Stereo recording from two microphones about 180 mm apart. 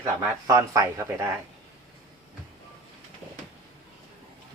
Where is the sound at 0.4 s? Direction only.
20° right (ahead or behind).